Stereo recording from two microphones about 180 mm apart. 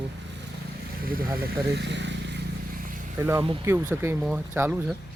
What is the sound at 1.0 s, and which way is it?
Speech, 55° right (ahead or behind).